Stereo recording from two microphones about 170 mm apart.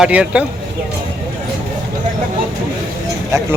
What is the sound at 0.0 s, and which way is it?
Speech, 5° right (ahead or behind).